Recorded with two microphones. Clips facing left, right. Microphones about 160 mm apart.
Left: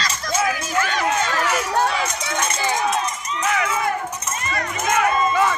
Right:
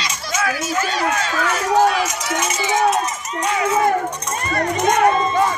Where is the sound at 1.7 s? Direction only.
65° right (ahead or behind).